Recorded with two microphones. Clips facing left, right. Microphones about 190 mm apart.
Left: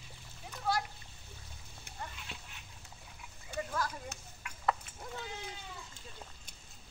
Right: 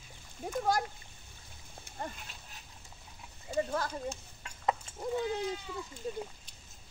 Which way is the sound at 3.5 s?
30° right (ahead or behind).